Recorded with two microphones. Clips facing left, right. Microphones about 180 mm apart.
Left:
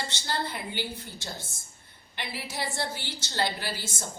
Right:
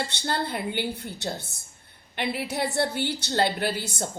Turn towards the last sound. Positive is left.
turn(degrees=-65)  # may be behind; listen again after turning